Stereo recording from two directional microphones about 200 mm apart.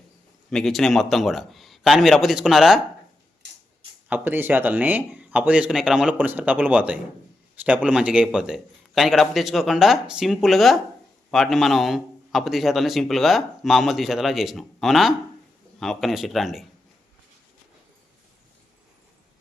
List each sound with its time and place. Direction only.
0.5 s a man's voice: centre (ahead or behind)
4.1 s a man's voice: 10° right (ahead or behind)